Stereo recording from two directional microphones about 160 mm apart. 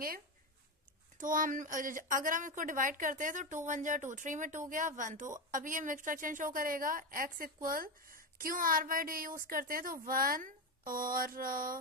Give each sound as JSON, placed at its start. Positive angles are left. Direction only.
{"t": 1.1, "sound": "a woman's voice", "side_deg": -55}